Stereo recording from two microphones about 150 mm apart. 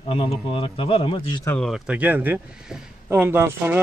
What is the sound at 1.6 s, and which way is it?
Speech, 5° right (ahead or behind).